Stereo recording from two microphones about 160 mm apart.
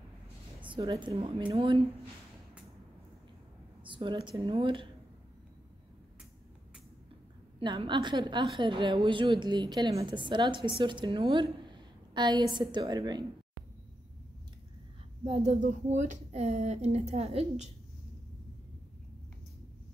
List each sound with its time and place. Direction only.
0.7 s a woman's voice: 30° right (ahead or behind)
3.8 s a woman's voice: 30° right (ahead or behind)
7.6 s a woman's voice: 30° right (ahead or behind)
15.2 s speech: 40° right (ahead or behind)